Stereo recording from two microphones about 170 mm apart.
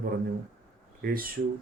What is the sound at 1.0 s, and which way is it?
Speech, 60° right (ahead or behind).